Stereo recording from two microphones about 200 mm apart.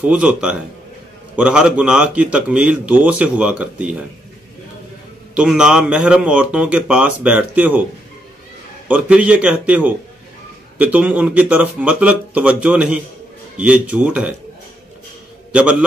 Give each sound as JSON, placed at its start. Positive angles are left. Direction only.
{"t": 0.0, "sound": "a man's voice", "side_deg": -5}
{"t": 5.3, "sound": "a man's voice", "side_deg": -5}
{"t": 8.8, "sound": "speech", "side_deg": -5}